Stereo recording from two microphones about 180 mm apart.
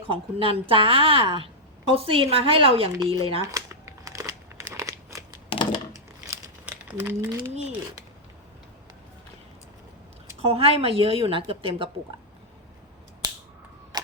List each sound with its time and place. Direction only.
0.1 s a woman's voice: 30° right (ahead or behind)
3.4 s crumpling: 15° right (ahead or behind)
4.7 s a sound: 15° right (ahead or behind)
5.5 s a sound: 25° left (ahead or behind)
6.2 s crumpling: 15° right (ahead or behind)
10.4 s a woman's voice: 35° right (ahead or behind)
13.2 s finger snapping: 20° right (ahead or behind)
13.9 s tick-tock: 20° right (ahead or behind)